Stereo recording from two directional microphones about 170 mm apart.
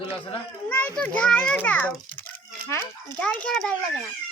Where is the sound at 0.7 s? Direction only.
10° left (ahead or behind).